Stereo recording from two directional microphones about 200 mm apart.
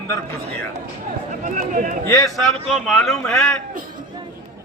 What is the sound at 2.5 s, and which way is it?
Speech, centre (ahead or behind).